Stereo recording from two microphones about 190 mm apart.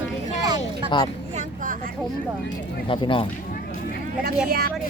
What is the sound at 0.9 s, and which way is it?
Speech, 25° left (ahead or behind).